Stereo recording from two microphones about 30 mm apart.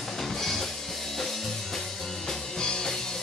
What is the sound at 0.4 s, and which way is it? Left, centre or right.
Music, centre.